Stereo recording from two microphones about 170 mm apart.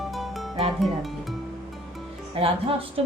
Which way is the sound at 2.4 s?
35° right (ahead or behind).